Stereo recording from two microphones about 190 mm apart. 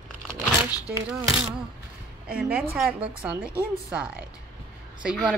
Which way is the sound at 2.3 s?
5° right (ahead or behind).